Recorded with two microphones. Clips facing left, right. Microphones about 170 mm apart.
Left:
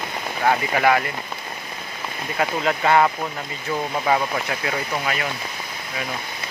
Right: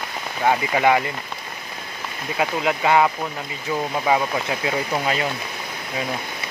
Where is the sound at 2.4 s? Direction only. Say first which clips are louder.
Even; 10° right (ahead or behind).